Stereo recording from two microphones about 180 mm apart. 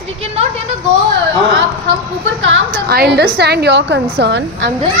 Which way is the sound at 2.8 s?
60° right (ahead or behind).